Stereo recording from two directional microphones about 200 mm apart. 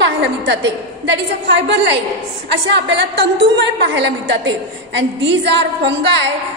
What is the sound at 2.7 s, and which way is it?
A woman's voice, 60° right (ahead or behind).